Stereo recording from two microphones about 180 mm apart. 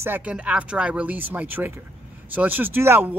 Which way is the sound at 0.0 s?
10° right (ahead or behind).